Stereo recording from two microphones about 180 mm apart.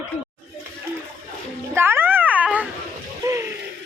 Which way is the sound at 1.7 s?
15° right (ahead or behind).